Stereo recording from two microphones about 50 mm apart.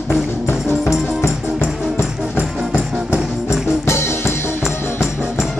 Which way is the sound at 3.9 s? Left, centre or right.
Left.